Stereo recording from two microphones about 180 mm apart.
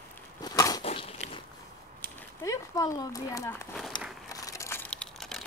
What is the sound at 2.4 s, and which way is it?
Speech, 15° left (ahead or behind).